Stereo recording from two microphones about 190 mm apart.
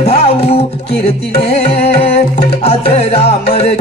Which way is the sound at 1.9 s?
30° left (ahead or behind).